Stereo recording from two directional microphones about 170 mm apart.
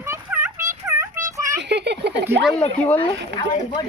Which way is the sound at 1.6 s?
85° right.